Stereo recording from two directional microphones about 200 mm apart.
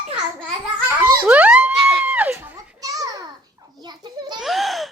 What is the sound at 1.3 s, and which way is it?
Children playing, 5° right (ahead or behind).